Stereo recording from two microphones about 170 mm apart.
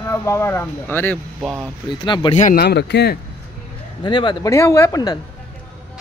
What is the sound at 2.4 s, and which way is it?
Speech, 50° left (ahead or behind).